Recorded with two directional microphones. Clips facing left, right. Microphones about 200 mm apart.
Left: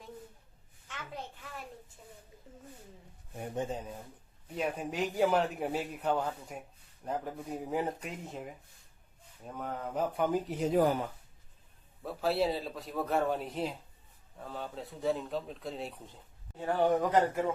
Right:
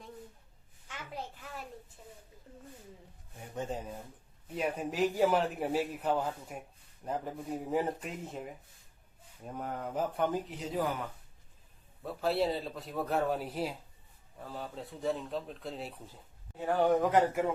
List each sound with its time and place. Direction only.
0.9 s a child's voice: 10° right (ahead or behind)
3.7 s speech: centre (ahead or behind)
10.6 s speech: 55° left (ahead or behind)
12.0 s speech: centre (ahead or behind)